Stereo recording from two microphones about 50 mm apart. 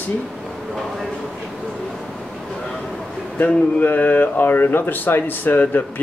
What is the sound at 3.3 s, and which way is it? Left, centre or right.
Speech, left.